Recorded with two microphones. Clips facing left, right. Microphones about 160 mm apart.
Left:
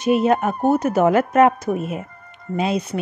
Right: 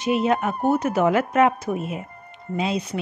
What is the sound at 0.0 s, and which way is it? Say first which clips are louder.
A woman's voice: left 4 dB; 45° left (ahead or behind).